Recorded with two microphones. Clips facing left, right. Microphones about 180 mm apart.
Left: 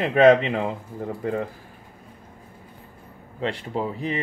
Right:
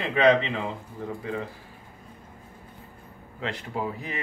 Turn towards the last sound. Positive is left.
turn(degrees=30)  # may be behind; listen again after turning